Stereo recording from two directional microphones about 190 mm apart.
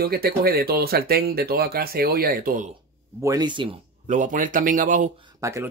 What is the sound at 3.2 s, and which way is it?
Speech, 20° right (ahead or behind).